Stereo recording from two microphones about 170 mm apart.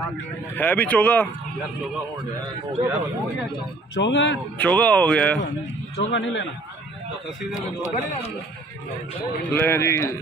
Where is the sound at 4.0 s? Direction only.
90° left.